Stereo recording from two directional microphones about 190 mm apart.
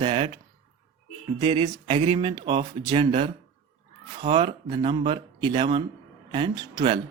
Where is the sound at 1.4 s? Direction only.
30° right (ahead or behind).